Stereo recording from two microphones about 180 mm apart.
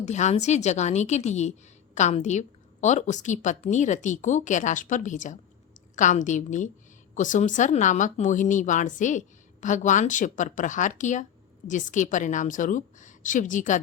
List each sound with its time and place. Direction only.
0.0 s a woman's voice: 40° left (ahead or behind)